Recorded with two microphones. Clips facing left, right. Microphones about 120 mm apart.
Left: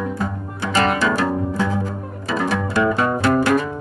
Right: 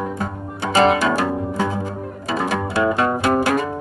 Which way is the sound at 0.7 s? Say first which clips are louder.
Right 3 dB; 20° right (ahead or behind).